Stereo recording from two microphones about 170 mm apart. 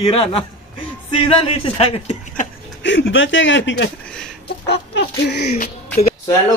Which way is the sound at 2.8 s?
90° left.